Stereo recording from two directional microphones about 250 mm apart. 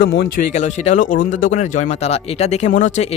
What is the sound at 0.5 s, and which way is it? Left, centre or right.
Speech, left.